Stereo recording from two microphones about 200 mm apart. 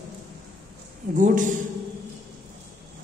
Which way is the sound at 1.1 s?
40° right (ahead or behind).